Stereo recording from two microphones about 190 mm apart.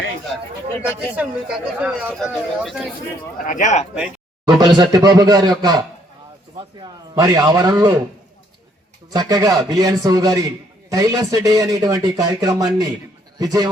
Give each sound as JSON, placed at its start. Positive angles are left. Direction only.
{"t": 0.3, "sound": "a man's voice", "side_deg": 0}
{"t": 3.4, "sound": "speech", "side_deg": 40}
{"t": 4.6, "sound": "speech", "side_deg": -20}
{"t": 7.2, "sound": "speech", "side_deg": -20}
{"t": 9.1, "sound": "a man's voice", "side_deg": -20}